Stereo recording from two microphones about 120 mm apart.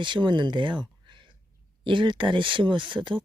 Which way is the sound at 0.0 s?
40° right (ahead or behind).